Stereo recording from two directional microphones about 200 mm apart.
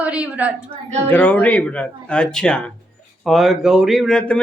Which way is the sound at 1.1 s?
10° left (ahead or behind).